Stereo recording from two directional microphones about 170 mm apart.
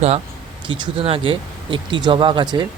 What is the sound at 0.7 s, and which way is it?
Speech, 30° right (ahead or behind).